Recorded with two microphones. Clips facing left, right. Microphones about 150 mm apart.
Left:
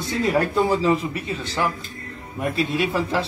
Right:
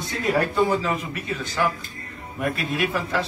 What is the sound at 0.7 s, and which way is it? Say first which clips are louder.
Speech: left 4 dB; 30° left (ahead or behind).